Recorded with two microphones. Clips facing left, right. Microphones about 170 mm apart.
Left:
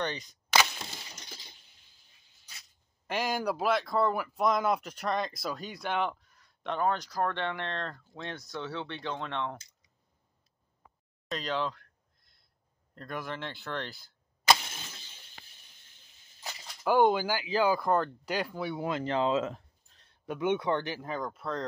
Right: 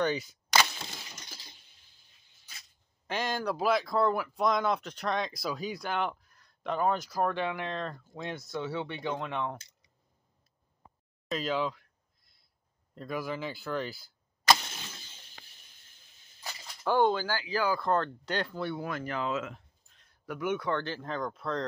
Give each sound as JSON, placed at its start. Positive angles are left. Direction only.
{"t": 0.0, "sound": "speech", "side_deg": -5}
{"t": 3.1, "sound": "speech", "side_deg": 10}
{"t": 10.8, "sound": "a sound", "side_deg": -30}
{"t": 11.2, "sound": "a sound", "side_deg": -5}
{"t": 12.9, "sound": "speech", "side_deg": -5}
{"t": 16.8, "sound": "speech", "side_deg": 15}
{"t": 18.8, "sound": "speech", "side_deg": 20}